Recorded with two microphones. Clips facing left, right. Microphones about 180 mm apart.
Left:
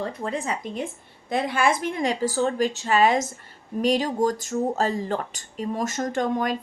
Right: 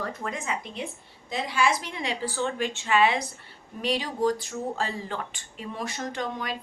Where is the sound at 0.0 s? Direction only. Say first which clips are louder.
Left 4 dB; 30° left (ahead or behind).